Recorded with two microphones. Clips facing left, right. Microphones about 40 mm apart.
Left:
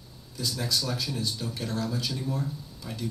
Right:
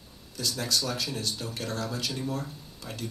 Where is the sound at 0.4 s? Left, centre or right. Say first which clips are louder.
Even; right.